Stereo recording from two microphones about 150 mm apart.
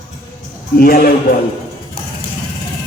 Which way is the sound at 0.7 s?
80° left.